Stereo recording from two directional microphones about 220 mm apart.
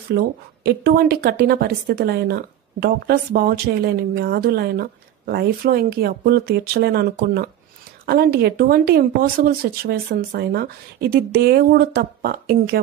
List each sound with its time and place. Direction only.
0.1 s speech: 50° right (ahead or behind)